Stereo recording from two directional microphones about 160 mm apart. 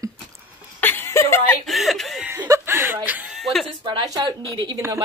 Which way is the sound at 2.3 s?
15° right (ahead or behind).